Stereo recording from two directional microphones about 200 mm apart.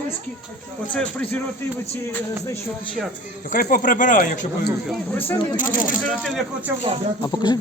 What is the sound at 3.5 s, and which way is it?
Speech, 45° left (ahead or behind).